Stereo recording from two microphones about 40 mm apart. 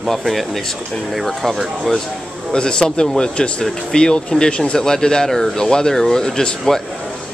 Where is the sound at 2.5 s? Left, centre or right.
Left.